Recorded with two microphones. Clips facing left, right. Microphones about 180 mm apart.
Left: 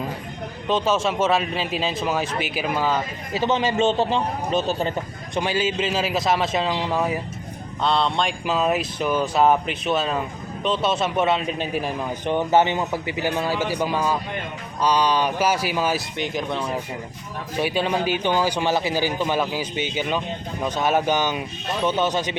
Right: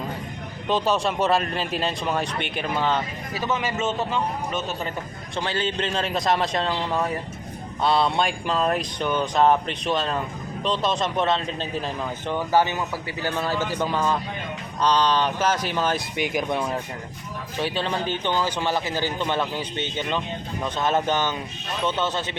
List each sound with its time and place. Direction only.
0.7 s speech: centre (ahead or behind)
3.3 s a man's voice: 30° left (ahead or behind)
5.3 s speech: 15° left (ahead or behind)
7.8 s a man's voice: 5° right (ahead or behind); by 16.0 s 10° left (ahead or behind)
16.1 s speech: 10° right (ahead or behind)
17.6 s a man's voice: 10° left (ahead or behind)